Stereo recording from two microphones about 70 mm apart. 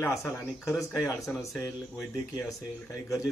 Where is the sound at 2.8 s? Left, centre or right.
Left.